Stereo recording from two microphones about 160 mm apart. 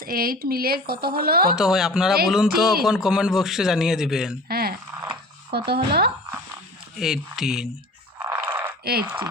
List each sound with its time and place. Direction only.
0.0 s speech: 65° right (ahead or behind)
1.5 s speech: 5° right (ahead or behind)
4.4 s speech: 75° right (ahead or behind)
5.5 s speech: 90° right
6.9 s speech: centre (ahead or behind)
8.3 s a sound: 15° right (ahead or behind)
8.8 s speech: 75° right (ahead or behind)